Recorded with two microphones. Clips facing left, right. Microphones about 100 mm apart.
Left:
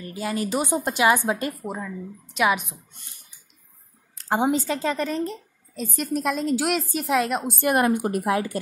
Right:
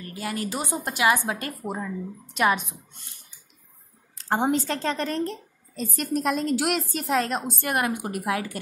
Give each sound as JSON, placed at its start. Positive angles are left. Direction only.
{"t": 0.0, "sound": "a woman's voice", "side_deg": 25}
{"t": 1.6, "sound": "a woman's voice", "side_deg": -10}
{"t": 2.9, "sound": "a sound", "side_deg": 15}
{"t": 4.2, "sound": "a woman's voice", "side_deg": 5}
{"t": 7.6, "sound": "a woman's voice", "side_deg": 25}